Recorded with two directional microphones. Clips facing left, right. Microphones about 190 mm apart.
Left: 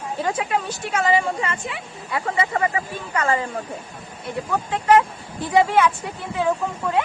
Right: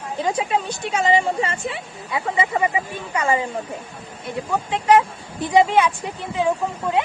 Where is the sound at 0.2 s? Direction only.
20° right (ahead or behind).